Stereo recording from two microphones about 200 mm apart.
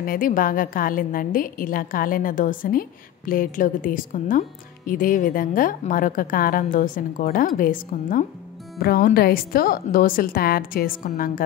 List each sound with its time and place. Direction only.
0.0 s a woman's voice: 45° left (ahead or behind)